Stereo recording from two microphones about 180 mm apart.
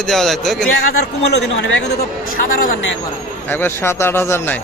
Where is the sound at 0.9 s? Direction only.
70° left (ahead or behind).